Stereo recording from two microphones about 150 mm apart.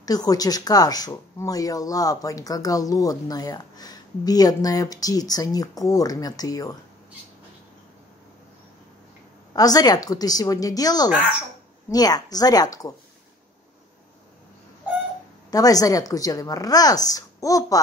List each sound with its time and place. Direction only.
0.0 s speech: 25° left (ahead or behind)
9.5 s speech: 25° left (ahead or behind)
15.5 s speech: 25° left (ahead or behind)